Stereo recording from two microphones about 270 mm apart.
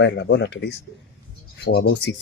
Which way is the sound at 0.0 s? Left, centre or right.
Left.